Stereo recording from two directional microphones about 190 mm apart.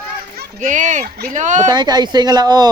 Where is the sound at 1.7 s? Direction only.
20° right (ahead or behind).